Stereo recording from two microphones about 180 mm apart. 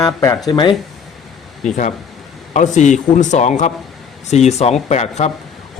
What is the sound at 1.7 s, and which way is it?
A man's voice, 45° left (ahead or behind).